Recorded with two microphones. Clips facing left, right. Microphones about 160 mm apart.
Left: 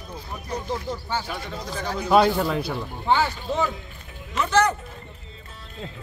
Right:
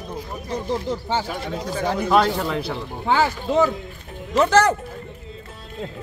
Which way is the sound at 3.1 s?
90° right.